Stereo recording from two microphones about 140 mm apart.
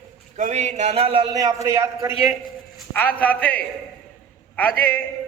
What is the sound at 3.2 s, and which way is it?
A man's voice, 10° left (ahead or behind).